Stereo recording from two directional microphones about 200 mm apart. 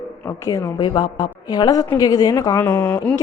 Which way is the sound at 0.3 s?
15° left (ahead or behind).